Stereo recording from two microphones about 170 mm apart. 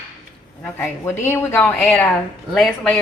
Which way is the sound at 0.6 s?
15° left (ahead or behind).